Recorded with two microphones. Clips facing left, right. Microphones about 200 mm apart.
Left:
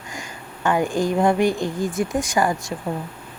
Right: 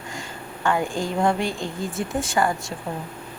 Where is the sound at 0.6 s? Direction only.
20° left (ahead or behind).